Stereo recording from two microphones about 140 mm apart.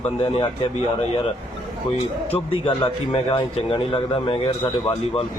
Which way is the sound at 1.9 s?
40° left (ahead or behind).